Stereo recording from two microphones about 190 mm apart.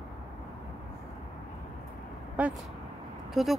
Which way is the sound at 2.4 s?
10° right (ahead or behind).